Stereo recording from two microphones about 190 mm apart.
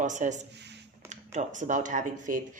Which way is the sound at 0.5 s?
65° right (ahead or behind).